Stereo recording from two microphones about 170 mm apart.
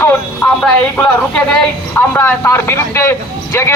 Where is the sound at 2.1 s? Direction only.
15° left (ahead or behind).